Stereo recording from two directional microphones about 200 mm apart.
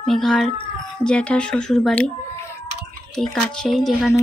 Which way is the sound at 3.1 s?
Centre (ahead or behind).